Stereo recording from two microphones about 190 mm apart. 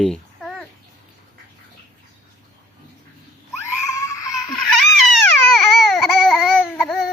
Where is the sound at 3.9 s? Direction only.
15° left (ahead or behind).